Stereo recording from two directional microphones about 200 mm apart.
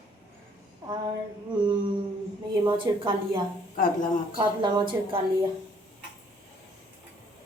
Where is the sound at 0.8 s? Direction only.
15° right (ahead or behind).